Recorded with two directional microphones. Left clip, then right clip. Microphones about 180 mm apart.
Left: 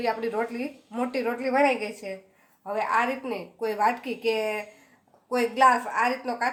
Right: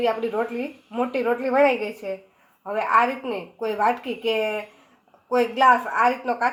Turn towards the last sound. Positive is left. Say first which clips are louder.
# right 5 dB
turn(degrees=-25)  # may be behind; listen again after turning